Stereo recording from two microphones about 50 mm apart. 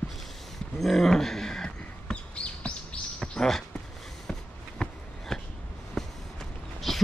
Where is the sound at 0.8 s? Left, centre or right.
Centre; by 2.7 s left.